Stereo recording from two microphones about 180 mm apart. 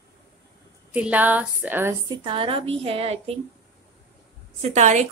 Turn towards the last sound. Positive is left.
turn(degrees=-40)  # may be behind; listen again after turning